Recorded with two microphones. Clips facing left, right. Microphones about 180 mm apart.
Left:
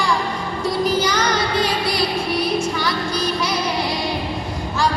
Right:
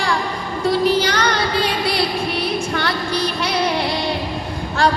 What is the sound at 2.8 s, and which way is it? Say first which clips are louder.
Child singing: right 1 dB; 60° right (ahead or behind).